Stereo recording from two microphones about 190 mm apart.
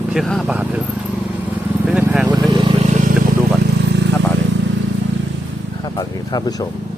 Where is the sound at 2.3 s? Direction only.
20° right (ahead or behind); by 3.1 s 40° right (ahead or behind).